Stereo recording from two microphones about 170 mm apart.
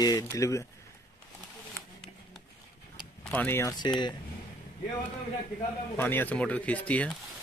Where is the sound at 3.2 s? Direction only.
10° left (ahead or behind); by 4.1 s 25° left (ahead or behind).